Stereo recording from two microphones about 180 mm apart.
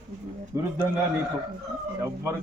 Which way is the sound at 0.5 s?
15° right (ahead or behind).